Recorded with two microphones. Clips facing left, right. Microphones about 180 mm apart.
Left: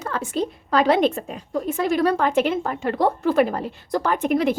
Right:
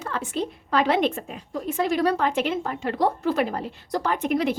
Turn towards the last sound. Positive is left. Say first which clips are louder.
# left 3 dB
turn(degrees=50)  # may be behind; listen again after turning